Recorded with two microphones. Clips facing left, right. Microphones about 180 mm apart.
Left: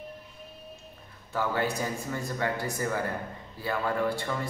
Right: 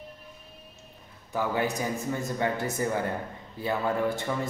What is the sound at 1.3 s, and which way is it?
A man's voice, 15° right (ahead or behind).